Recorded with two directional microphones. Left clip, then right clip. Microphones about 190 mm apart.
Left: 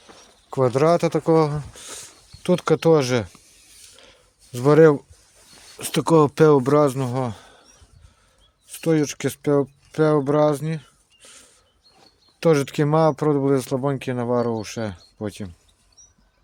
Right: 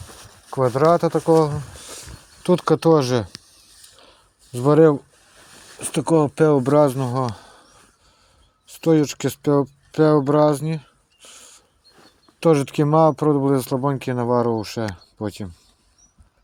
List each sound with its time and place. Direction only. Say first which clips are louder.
0.5 s speech: right 1 dB; 15° left (ahead or behind)
3.9 s a sound: even; 5° left (ahead or behind)
5.8 s speech: left 2 dB; 20° left (ahead or behind)
6.6 s speech: right 2 dB; 5° left (ahead or behind)
8.6 s speech: right 3 dB; 10° right (ahead or behind)
12.4 s speech: right 1 dB; 5° left (ahead or behind)